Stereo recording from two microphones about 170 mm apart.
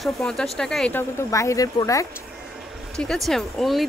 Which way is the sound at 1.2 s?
20° left (ahead or behind).